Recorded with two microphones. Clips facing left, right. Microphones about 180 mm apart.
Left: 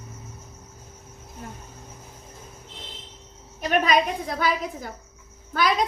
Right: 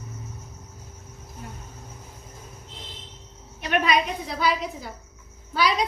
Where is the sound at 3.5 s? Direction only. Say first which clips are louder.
Left 2 dB; 40° left (ahead or behind).